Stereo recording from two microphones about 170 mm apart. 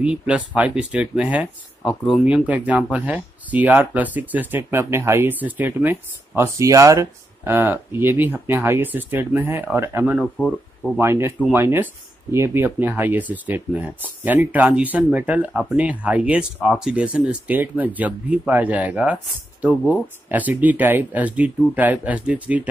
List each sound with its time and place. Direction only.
0.0 s speech: 5° right (ahead or behind)
10.2 s speech: 5° left (ahead or behind)
11.0 s speech: 15° right (ahead or behind)
20.2 s speech: 10° right (ahead or behind)